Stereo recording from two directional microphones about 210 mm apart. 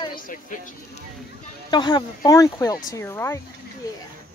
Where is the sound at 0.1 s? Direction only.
40° left (ahead or behind).